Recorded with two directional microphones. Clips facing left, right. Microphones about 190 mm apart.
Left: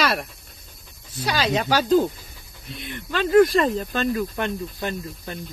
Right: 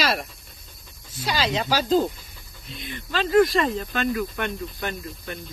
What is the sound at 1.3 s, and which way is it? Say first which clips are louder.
Speech: left 2 dB; 55° left (ahead or behind).